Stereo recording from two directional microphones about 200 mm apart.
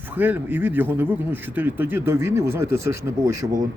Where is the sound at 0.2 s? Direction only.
10° right (ahead or behind).